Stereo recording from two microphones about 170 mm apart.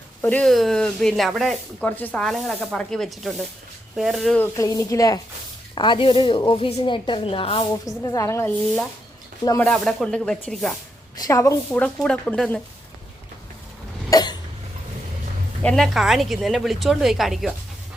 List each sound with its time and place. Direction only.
0.2 s speech: 10° left (ahead or behind)
4.4 s a woman's voice: 20° left (ahead or behind)
7.9 s a woman's voice: 20° left (ahead or behind)
9.6 s speech: 5° left (ahead or behind)
11.2 s a woman's voice: 20° left (ahead or behind)
11.7 s speech: 5° left (ahead or behind)
14.1 s cough: 25° left (ahead or behind)
15.6 s speech: 5° left (ahead or behind)